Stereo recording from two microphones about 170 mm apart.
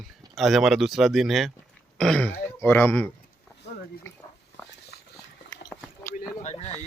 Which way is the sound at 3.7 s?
90° left.